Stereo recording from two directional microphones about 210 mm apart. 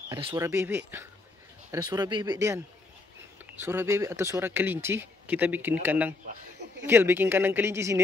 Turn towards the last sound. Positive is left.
turn(degrees=-10)  # may be behind; listen again after turning